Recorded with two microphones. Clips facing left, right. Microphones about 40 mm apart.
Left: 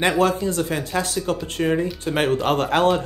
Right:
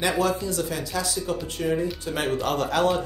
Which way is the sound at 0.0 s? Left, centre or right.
Left.